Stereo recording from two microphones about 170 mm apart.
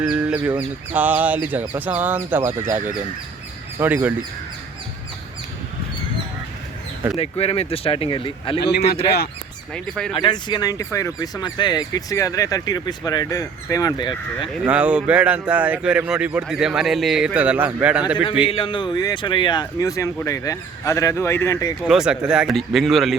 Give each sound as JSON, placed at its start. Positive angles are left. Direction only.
{"t": 0.0, "sound": "bird", "side_deg": -5}
{"t": 0.4, "sound": "speech", "side_deg": -10}
{"t": 3.8, "sound": "speech", "side_deg": -10}
{"t": 7.2, "sound": "speech", "side_deg": 35}
{"t": 9.7, "sound": "speech", "side_deg": 5}
{"t": 10.2, "sound": "speech", "side_deg": 25}
{"t": 14.4, "sound": "speech", "side_deg": -5}
{"t": 18.4, "sound": "speech", "side_deg": 30}
{"t": 21.8, "sound": "speech", "side_deg": -5}